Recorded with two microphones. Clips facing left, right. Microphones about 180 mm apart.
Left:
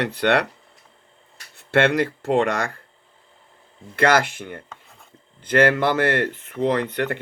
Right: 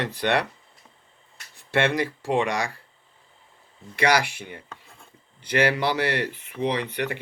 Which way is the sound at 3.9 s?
50° left (ahead or behind).